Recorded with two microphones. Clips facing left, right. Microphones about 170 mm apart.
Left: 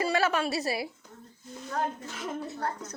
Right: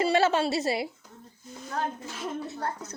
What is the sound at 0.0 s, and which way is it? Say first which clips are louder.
Speech: right 4 dB; 25° right (ahead or behind).